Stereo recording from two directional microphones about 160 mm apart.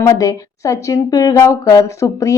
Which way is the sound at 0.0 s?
20° left (ahead or behind).